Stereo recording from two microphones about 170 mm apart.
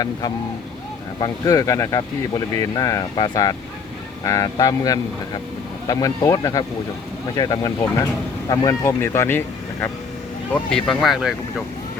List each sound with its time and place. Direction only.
1.2 s speech: 20° left (ahead or behind)
10.5 s speech: 5° left (ahead or behind)